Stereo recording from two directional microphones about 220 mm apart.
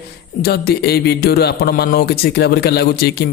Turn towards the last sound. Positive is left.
turn(degrees=45)  # may be behind; listen again after turning